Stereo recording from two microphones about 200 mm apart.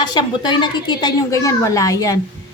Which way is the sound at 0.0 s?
20° left (ahead or behind).